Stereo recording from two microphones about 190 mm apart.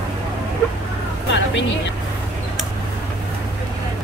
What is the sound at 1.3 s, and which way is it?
Music, 70° left (ahead or behind).